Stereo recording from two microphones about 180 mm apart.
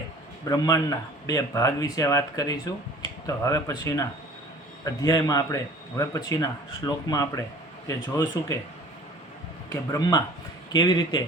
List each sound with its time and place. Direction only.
0.4 s speech: 20° left (ahead or behind)
9.6 s speech: 20° left (ahead or behind)